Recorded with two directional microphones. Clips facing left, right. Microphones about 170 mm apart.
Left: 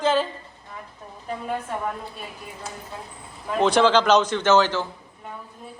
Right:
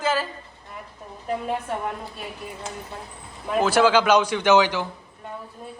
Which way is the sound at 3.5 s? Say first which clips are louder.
Even; 5° right (ahead or behind).